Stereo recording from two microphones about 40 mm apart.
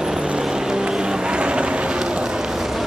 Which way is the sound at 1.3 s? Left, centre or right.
Right.